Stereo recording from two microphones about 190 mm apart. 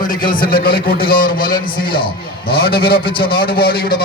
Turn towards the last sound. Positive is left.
turn(degrees=55)  # may be behind; listen again after turning